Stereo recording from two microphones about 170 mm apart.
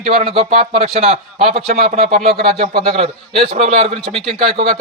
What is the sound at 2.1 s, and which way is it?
Speech, 60° right (ahead or behind).